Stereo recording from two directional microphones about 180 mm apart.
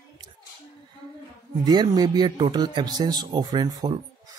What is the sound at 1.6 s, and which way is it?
Speech, 25° right (ahead or behind).